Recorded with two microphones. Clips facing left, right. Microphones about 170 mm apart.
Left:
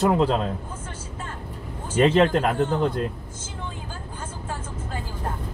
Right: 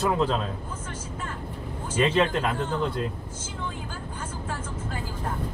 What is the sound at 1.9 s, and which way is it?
Speech, 45° left (ahead or behind).